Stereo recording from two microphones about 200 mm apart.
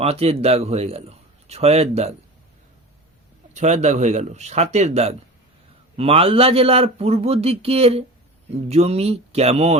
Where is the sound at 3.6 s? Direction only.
35° right (ahead or behind).